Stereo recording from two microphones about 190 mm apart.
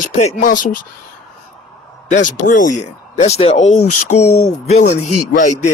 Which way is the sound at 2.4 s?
45° left (ahead or behind).